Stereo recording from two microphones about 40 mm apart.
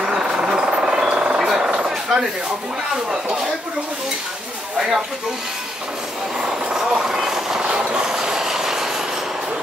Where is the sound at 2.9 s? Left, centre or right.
Right.